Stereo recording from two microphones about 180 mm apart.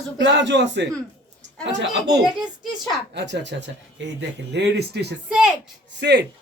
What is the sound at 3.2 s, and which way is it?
Speech, 75° right (ahead or behind).